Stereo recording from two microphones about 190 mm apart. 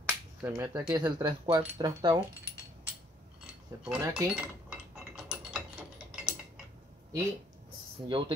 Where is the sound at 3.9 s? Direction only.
5° right (ahead or behind).